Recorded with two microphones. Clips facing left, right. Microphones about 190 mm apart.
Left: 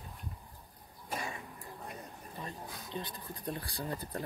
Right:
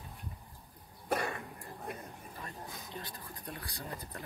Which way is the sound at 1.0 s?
60° right (ahead or behind).